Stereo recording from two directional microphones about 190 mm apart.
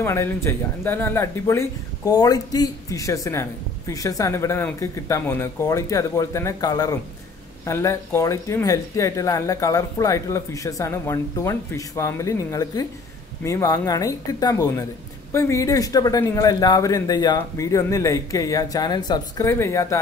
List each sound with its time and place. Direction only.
0.0 s speech: 15° left (ahead or behind)